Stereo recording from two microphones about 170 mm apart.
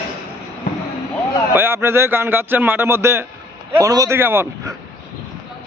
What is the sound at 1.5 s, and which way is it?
A man's voice, 15° right (ahead or behind).